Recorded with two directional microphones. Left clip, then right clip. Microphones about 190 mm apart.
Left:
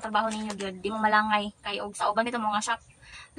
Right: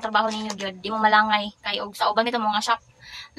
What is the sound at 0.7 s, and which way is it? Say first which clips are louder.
A woman's voice: right 6 dB; 5° left (ahead or behind).